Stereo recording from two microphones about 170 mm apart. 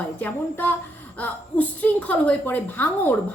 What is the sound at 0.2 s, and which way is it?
A woman's voice, 10° left (ahead or behind).